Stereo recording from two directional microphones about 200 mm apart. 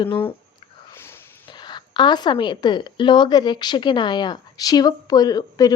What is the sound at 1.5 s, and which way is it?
A woman's voice, 20° left (ahead or behind).